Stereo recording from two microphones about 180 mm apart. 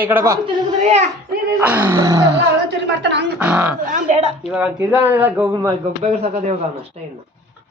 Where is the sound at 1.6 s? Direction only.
10° right (ahead or behind).